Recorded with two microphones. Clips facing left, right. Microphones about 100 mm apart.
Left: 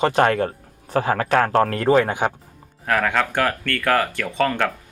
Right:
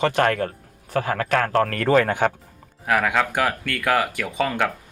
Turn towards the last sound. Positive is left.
turn(degrees=-10)  # may be behind; listen again after turning